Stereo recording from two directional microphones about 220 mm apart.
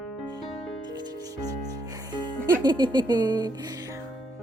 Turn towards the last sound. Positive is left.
turn(degrees=-20)  # may be behind; listen again after turning